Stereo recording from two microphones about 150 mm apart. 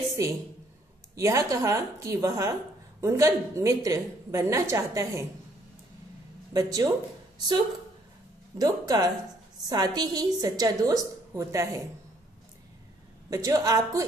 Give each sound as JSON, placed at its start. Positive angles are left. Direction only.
{"t": 0.2, "sound": "a woman's voice", "side_deg": -20}
{"t": 6.5, "sound": "a woman's voice", "side_deg": -25}
{"t": 8.5, "sound": "a woman's voice", "side_deg": -25}
{"t": 13.3, "sound": "a woman's voice", "side_deg": -20}